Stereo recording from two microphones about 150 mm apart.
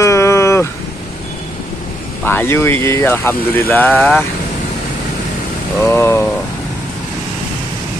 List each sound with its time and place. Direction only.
0.0 s a sound: 20° left (ahead or behind)
2.2 s speech: 15° left (ahead or behind)
5.8 s speech: 15° left (ahead or behind)